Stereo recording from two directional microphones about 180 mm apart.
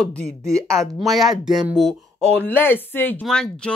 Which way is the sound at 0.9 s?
Centre (ahead or behind).